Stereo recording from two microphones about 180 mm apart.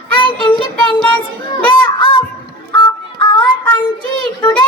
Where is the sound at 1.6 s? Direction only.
25° left (ahead or behind).